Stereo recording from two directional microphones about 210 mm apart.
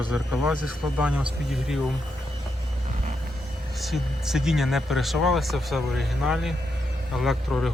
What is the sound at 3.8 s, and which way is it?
Speech, centre (ahead or behind).